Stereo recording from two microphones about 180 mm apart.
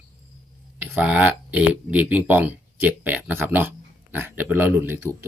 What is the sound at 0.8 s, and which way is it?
Speech, 10° right (ahead or behind).